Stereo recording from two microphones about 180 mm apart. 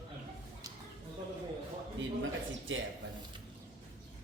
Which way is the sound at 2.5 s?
90° right.